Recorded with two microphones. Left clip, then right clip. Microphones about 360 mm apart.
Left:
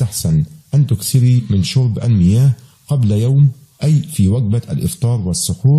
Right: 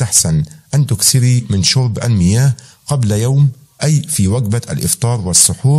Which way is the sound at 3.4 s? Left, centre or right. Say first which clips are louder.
Right 2 dB; centre.